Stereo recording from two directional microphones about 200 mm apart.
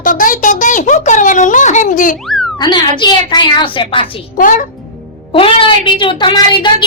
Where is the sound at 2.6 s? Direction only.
20° left (ahead or behind).